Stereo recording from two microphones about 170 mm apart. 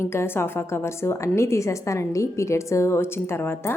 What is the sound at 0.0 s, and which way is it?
A woman's voice, 15° left (ahead or behind).